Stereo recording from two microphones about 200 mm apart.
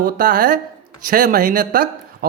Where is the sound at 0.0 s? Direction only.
45° right (ahead or behind).